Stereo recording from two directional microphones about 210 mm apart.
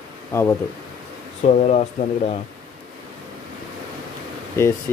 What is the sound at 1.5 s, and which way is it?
Speech, 30° left (ahead or behind).